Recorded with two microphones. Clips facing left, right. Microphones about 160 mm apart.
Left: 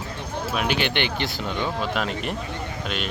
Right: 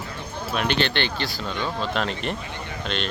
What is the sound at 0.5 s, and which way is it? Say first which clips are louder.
Speech: right 1 dB; 5° left (ahead or behind).